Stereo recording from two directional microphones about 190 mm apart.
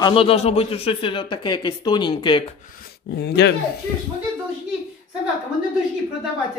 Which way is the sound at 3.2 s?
65° left (ahead or behind).